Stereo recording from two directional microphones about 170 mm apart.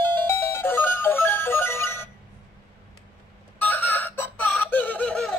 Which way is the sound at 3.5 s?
10° left (ahead or behind).